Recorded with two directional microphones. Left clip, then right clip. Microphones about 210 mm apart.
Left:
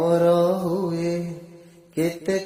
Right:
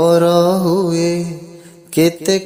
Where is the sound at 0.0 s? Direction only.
35° right (ahead or behind).